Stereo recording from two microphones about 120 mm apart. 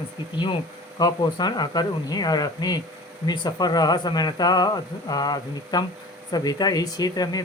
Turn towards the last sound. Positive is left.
turn(degrees=30)  # may be behind; listen again after turning